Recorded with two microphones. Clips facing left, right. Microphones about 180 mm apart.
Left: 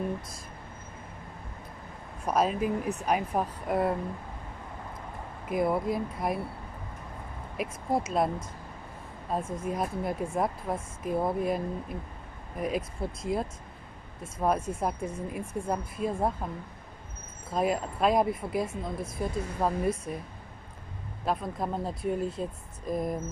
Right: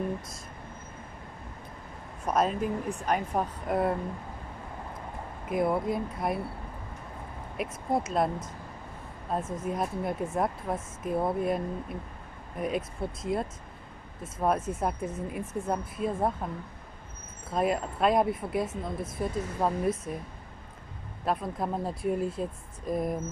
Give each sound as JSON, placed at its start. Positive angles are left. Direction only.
{"t": 2.2, "sound": "a woman's voice", "side_deg": 0}
{"t": 5.5, "sound": "a woman's voice", "side_deg": 0}
{"t": 7.5, "sound": "a woman's voice", "side_deg": 0}
{"t": 9.3, "sound": "a woman's voice", "side_deg": 0}
{"t": 17.5, "sound": "a woman's voice", "side_deg": 0}
{"t": 21.3, "sound": "a woman's voice", "side_deg": 0}